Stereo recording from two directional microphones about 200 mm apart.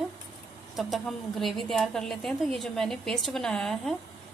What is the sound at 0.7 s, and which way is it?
A woman's voice, centre (ahead or behind).